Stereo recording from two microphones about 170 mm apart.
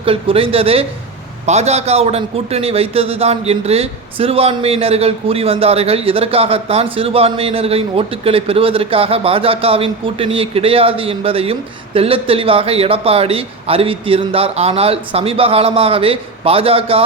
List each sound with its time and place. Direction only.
0.0 s a man's voice: 30° right (ahead or behind)